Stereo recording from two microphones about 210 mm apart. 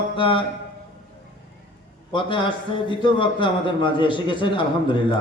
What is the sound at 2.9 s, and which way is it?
A man's voice, 20° left (ahead or behind).